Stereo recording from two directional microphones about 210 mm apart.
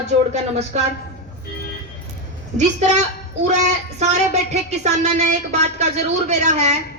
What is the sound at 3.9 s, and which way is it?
Speech, 35° right (ahead or behind).